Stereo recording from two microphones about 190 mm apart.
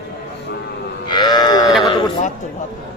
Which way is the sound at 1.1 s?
20° left (ahead or behind).